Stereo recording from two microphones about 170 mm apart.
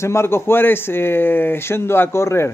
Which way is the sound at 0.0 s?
15° left (ahead or behind).